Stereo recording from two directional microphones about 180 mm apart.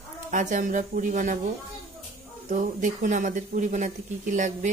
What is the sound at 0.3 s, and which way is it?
Speech, 45° right (ahead or behind).